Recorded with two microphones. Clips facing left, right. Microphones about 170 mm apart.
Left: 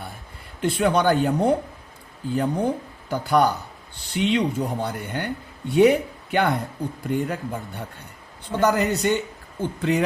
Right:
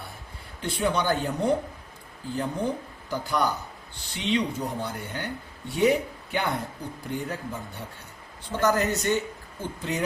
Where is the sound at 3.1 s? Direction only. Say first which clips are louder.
Left 8 dB; 60° left (ahead or behind).